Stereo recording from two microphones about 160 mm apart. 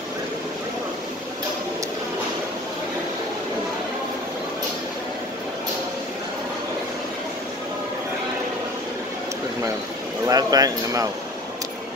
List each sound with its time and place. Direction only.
10.2 s speech: 25° right (ahead or behind)